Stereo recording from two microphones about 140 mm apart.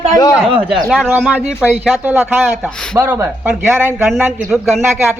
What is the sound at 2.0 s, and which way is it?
Speech, 15° right (ahead or behind).